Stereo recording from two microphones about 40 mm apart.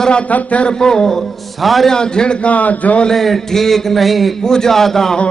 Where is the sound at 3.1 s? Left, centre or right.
Centre.